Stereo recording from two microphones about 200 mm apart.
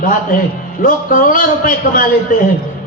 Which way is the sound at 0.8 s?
40° left (ahead or behind).